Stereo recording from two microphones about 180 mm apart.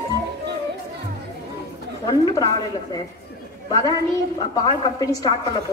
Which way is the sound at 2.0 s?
20° left (ahead or behind).